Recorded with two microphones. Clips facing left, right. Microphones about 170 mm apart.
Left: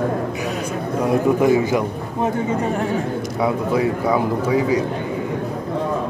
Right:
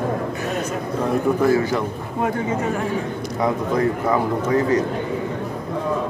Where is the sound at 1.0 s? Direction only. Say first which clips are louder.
Left 2 dB; 15° left (ahead or behind).